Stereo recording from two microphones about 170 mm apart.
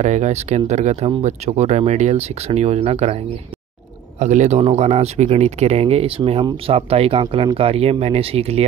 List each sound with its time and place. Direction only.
0.0 s speech: 45° right (ahead or behind)